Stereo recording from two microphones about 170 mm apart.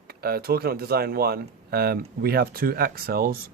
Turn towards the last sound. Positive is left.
turn(degrees=-60)  # may be behind; listen again after turning